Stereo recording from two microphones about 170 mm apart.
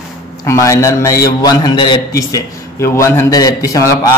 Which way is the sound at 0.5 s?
15° left (ahead or behind).